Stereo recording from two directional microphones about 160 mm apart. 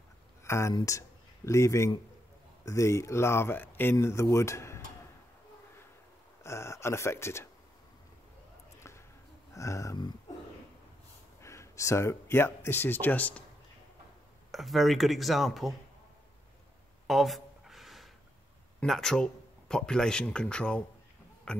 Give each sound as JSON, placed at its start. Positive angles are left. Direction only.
{"t": 0.4, "sound": "speech", "side_deg": 20}
{"t": 6.4, "sound": "speech", "side_deg": 15}
{"t": 9.5, "sound": "a sound", "side_deg": 20}
{"t": 11.4, "sound": "speech", "side_deg": 20}
{"t": 14.5, "sound": "speech", "side_deg": 0}
{"t": 17.1, "sound": "a sound", "side_deg": 0}
{"t": 18.8, "sound": "speech", "side_deg": 5}